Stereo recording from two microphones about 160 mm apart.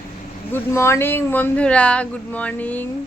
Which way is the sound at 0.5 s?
15° left (ahead or behind).